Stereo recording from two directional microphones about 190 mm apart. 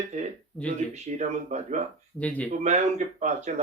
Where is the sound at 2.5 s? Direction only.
40° right (ahead or behind).